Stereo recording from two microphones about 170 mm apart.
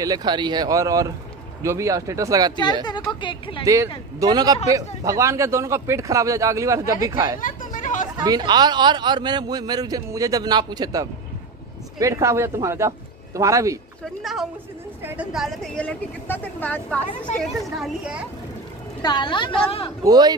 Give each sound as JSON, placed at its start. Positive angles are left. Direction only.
{"t": 0.0, "sound": "a man's voice", "side_deg": -25}
{"t": 2.8, "sound": "speech", "side_deg": 25}
{"t": 3.6, "sound": "a man's voice", "side_deg": -20}
{"t": 7.3, "sound": "hubbub", "side_deg": 50}
{"t": 8.2, "sound": "a man's voice", "side_deg": -25}
{"t": 14.2, "sound": "speech", "side_deg": 0}
{"t": 17.4, "sound": "speech", "side_deg": 0}
{"t": 19.0, "sound": "speech", "side_deg": 25}
{"t": 20.0, "sound": "a man's voice", "side_deg": -20}